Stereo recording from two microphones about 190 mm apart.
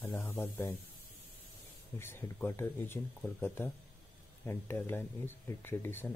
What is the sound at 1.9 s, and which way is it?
Speech, 10° left (ahead or behind).